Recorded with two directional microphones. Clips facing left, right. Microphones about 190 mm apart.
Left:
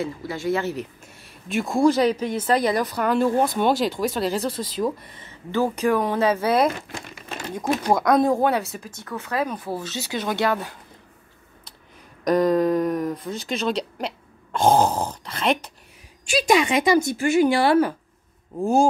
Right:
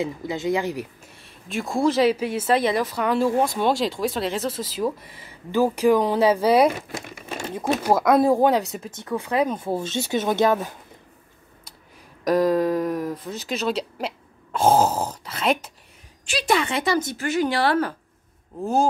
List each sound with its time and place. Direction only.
0.0 s speech: 20° right (ahead or behind)
1.2 s speech: centre (ahead or behind); by 10.8 s 20° right (ahead or behind)
12.3 s speech: 5° right (ahead or behind)
16.3 s speech: 15° left (ahead or behind)